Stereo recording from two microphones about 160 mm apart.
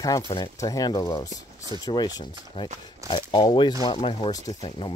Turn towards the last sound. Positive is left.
turn(degrees=30)  # may be behind; listen again after turning